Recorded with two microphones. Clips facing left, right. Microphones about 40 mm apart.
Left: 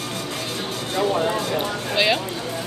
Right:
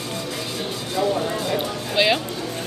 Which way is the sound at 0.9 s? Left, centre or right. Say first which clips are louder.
Left 1 dB; left.